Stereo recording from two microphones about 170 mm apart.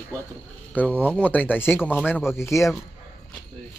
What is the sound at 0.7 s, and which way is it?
Speech, 10° left (ahead or behind).